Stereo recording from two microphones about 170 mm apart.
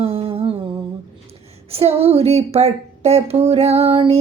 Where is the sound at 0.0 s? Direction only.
35° right (ahead or behind).